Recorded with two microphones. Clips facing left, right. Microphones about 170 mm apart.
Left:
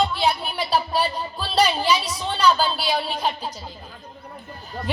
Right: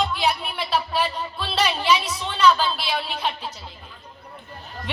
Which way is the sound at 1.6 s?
35° left (ahead or behind).